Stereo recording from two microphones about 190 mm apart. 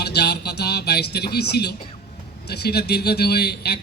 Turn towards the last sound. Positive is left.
turn(degrees=55)  # may be behind; listen again after turning